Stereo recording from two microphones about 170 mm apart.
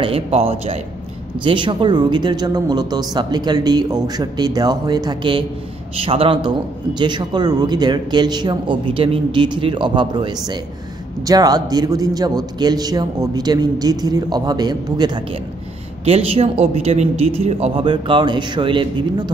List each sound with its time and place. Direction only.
0.0 s a man's voice: 35° right (ahead or behind)